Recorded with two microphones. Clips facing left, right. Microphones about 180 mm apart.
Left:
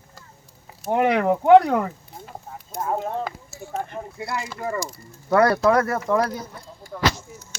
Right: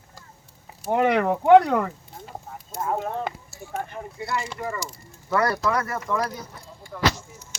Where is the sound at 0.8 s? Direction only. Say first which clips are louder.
Left 1 dB; 10° left (ahead or behind).